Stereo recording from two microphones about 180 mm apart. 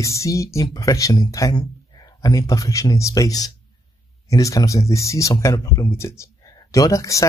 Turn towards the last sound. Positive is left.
turn(degrees=15)  # may be behind; listen again after turning